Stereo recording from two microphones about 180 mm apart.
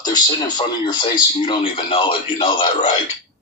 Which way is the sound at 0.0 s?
25° left (ahead or behind).